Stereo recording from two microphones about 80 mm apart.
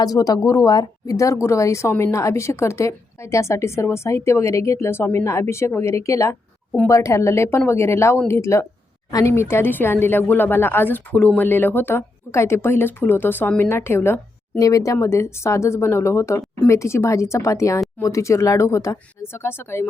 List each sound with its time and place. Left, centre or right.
0.0 s speech: left
1.1 s a woman's voice: left
14.6 s a woman's voice: left